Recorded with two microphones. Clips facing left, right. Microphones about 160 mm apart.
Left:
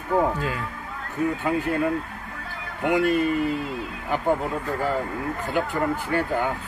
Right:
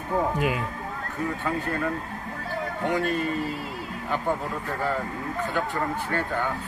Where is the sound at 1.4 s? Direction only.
15° left (ahead or behind).